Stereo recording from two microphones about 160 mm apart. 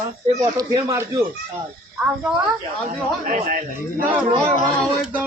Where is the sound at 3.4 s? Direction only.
65° right (ahead or behind).